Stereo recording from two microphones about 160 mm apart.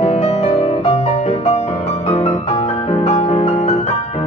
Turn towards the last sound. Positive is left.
turn(degrees=40)  # may be behind; listen again after turning